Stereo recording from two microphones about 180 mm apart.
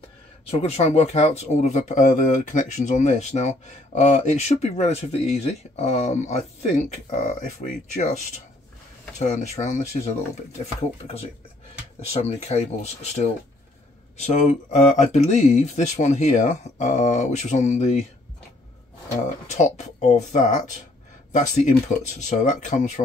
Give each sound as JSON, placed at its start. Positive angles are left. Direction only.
{"t": 0.6, "sound": "speech", "side_deg": 35}
{"t": 9.2, "sound": "speech", "side_deg": 40}
{"t": 19.4, "sound": "speech", "side_deg": 40}